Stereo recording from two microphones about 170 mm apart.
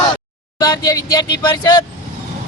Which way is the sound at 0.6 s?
20° left (ahead or behind).